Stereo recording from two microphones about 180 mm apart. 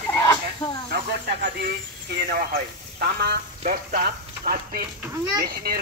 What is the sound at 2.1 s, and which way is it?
A man's voice, 50° right (ahead or behind).